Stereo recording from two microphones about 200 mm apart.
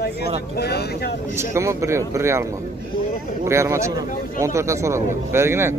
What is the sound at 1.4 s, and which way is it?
Speech, 15° right (ahead or behind).